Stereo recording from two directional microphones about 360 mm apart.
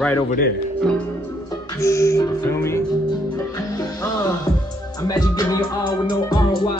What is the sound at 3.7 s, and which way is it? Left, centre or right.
Music, centre.